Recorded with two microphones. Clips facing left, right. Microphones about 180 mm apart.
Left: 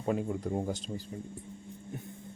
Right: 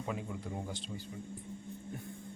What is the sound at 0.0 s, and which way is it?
Speech, 45° left (ahead or behind).